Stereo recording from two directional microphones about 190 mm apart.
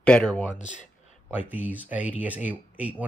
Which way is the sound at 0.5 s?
40° left (ahead or behind).